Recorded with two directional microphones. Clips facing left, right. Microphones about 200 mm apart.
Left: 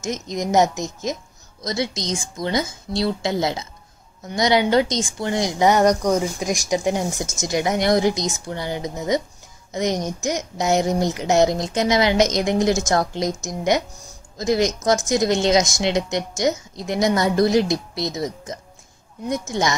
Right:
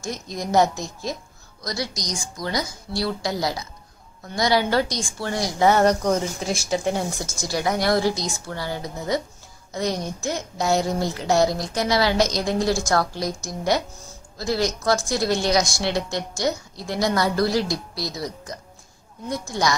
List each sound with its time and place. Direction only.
0.0 s a woman's voice: 20° left (ahead or behind)